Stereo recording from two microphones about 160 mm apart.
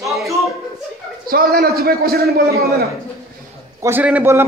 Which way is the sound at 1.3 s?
70° right (ahead or behind).